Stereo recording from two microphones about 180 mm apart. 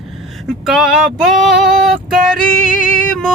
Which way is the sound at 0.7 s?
Centre (ahead or behind).